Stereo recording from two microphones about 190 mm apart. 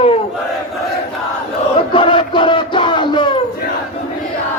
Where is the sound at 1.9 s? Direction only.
25° left (ahead or behind).